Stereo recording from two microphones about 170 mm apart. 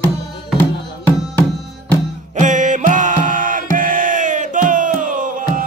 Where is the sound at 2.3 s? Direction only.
50° right (ahead or behind).